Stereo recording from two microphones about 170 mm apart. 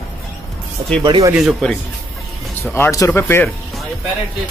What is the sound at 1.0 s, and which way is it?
Speech, 25° right (ahead or behind).